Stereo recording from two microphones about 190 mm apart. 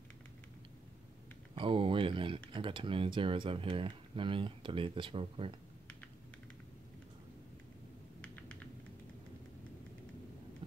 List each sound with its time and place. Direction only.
1.5 s speech: 25° right (ahead or behind)
8.2 s typing: 5° left (ahead or behind)